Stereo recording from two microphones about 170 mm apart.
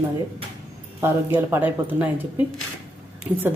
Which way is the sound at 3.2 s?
10° right (ahead or behind).